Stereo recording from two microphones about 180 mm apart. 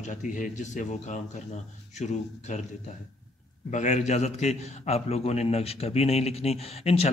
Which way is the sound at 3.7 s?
40° left (ahead or behind).